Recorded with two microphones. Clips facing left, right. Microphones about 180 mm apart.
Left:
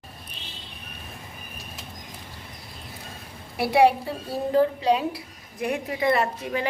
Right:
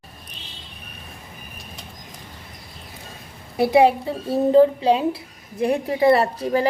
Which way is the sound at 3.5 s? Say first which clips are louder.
Right 3 dB; 20° right (ahead or behind).